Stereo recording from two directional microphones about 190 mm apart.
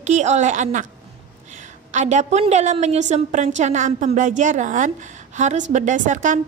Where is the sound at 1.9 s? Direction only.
40° right (ahead or behind).